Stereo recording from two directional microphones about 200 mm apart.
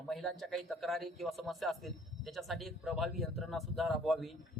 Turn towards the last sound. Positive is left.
turn(degrees=0)  # may be behind; listen again after turning